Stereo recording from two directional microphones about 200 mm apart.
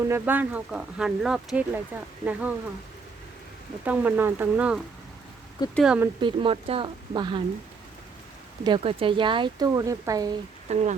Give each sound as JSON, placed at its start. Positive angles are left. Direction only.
{"t": 0.0, "sound": "speech", "side_deg": -10}
{"t": 3.8, "sound": "speech", "side_deg": -10}
{"t": 6.1, "sound": "speech", "side_deg": -25}
{"t": 8.6, "sound": "speech", "side_deg": -25}
{"t": 10.7, "sound": "speech", "side_deg": -35}